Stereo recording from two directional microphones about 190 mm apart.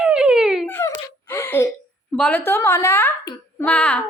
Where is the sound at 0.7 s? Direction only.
10° left (ahead or behind).